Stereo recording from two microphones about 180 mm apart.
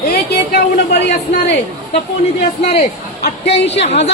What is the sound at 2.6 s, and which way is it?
A woman's voice, 35° left (ahead or behind).